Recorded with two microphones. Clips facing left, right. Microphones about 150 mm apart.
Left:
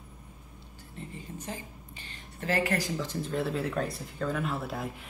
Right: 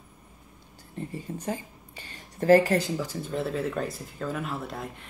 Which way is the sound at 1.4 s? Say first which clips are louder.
Right 7 dB; 40° right (ahead or behind).